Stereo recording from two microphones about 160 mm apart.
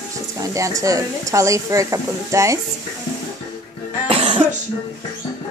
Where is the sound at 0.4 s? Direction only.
20° right (ahead or behind).